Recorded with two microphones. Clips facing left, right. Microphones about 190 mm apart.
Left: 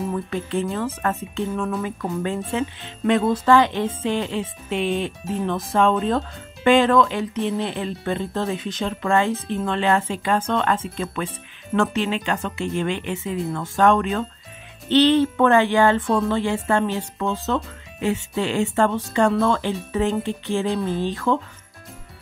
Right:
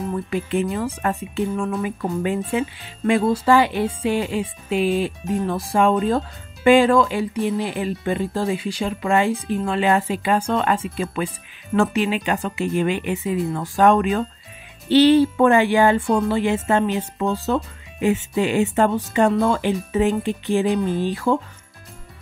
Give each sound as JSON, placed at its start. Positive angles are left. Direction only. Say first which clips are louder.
{"t": 0.1, "sound": "speech", "louder": "right 2 dB", "side_deg": -10}